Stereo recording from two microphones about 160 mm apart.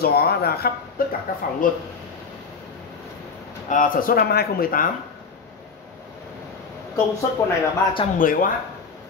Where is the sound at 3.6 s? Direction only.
55° left (ahead or behind).